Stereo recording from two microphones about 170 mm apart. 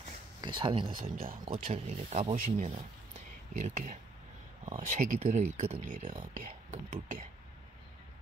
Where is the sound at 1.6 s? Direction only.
45° right (ahead or behind).